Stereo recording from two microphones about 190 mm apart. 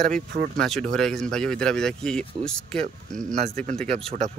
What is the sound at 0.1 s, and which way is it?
Speech, 50° right (ahead or behind).